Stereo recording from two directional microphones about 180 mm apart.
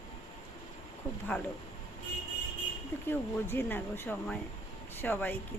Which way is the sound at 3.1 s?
10° left (ahead or behind).